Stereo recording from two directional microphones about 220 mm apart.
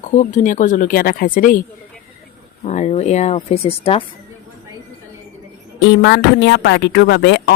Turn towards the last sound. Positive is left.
turn(degrees=50)  # may be behind; listen again after turning